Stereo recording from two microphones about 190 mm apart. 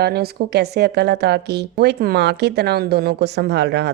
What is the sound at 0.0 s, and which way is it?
A woman's voice, 55° right (ahead or behind).